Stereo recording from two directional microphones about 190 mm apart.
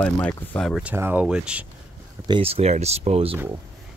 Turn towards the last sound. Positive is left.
turn(degrees=-30)  # may be behind; listen again after turning